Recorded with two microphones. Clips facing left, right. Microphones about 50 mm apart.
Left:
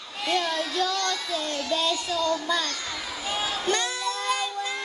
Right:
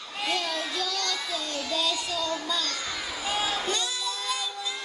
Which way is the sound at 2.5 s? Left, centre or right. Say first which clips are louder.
Left 3 dB; left.